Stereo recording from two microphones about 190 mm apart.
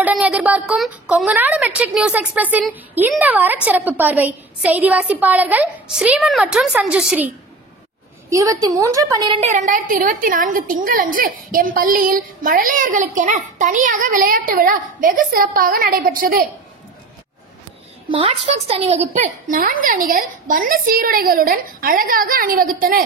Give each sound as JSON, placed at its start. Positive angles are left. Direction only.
{"t": 0.0, "sound": "a woman's voice", "side_deg": -5}
{"t": 8.3, "sound": "a woman's voice", "side_deg": -15}
{"t": 9.4, "sound": "a woman's voice", "side_deg": -40}
{"t": 18.1, "sound": "a woman's voice", "side_deg": -30}